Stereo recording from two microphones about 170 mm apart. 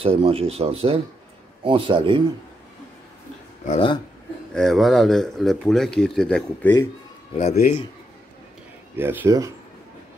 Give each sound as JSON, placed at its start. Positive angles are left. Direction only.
{"t": 0.0, "sound": "a man's voice", "side_deg": -35}
{"t": 3.6, "sound": "speech", "side_deg": 40}
{"t": 4.6, "sound": "speech", "side_deg": 0}
{"t": 8.9, "sound": "speech", "side_deg": -10}